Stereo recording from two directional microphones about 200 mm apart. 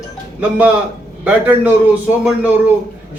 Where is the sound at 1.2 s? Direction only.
5° right (ahead or behind).